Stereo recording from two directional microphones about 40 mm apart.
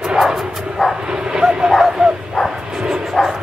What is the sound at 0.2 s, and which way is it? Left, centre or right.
Bow-wow, centre.